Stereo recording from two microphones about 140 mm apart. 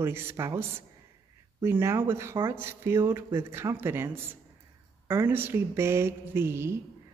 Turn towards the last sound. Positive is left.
turn(degrees=-20)  # may be behind; listen again after turning